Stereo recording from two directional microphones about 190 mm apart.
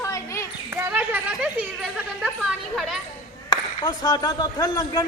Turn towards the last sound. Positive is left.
turn(degrees=20)  # may be behind; listen again after turning